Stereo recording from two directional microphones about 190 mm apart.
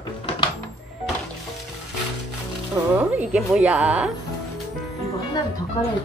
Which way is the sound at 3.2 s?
5° right (ahead or behind).